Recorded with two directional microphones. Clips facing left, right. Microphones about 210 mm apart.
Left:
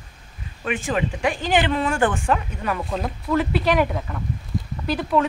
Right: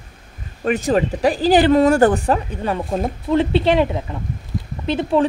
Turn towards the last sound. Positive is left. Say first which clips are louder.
# right 4 dB
turn(degrees=-25)  # may be behind; listen again after turning